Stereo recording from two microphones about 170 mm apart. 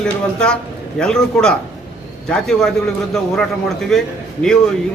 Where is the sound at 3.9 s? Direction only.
5° left (ahead or behind).